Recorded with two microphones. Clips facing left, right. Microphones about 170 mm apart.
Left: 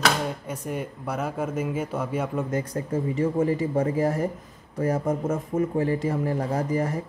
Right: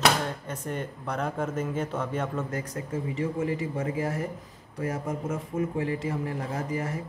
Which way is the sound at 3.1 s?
35° left (ahead or behind).